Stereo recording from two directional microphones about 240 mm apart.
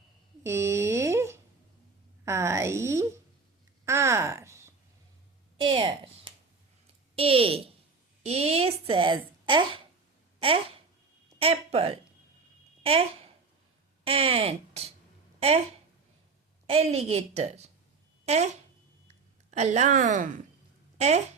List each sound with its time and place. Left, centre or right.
0.4 s a sound: centre
2.2 s speech: centre
3.8 s a sound: centre
7.2 s a woman's voice: right
11.3 s speech: right
16.6 s a woman's voice: right